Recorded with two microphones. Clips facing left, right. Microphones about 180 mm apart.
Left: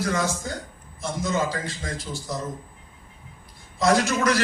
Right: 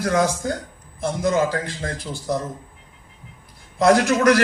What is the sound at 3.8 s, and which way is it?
Speech, 60° right (ahead or behind).